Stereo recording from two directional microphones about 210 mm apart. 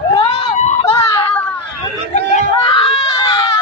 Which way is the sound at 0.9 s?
10° left (ahead or behind).